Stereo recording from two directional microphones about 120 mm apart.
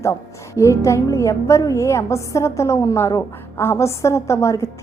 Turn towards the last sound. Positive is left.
turn(degrees=25)  # may be behind; listen again after turning